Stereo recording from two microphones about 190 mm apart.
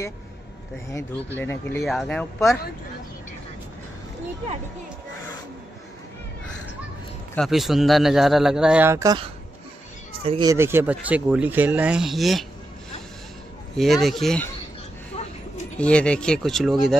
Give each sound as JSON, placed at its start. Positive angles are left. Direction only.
{"t": 1.4, "sound": "speech", "side_deg": 10}
{"t": 7.3, "sound": "speech", "side_deg": 0}
{"t": 13.7, "sound": "speech", "side_deg": 0}
{"t": 15.1, "sound": "a sound", "side_deg": 35}
{"t": 15.8, "sound": "speech", "side_deg": 5}